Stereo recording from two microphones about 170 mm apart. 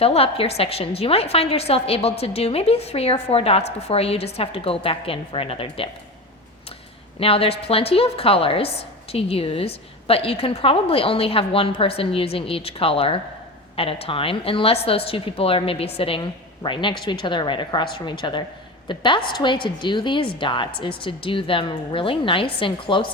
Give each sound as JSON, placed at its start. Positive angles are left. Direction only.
{"t": 0.0, "sound": "a woman's voice", "side_deg": 35}
{"t": 7.2, "sound": "a woman's voice", "side_deg": 35}